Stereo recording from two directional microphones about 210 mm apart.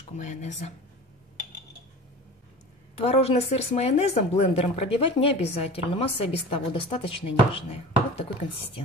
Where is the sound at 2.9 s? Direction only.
30° left (ahead or behind).